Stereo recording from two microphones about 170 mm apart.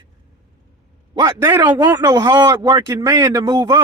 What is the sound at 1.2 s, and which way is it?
Speech, 20° right (ahead or behind).